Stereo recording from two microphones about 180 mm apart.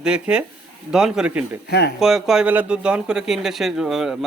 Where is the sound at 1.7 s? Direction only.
65° left (ahead or behind).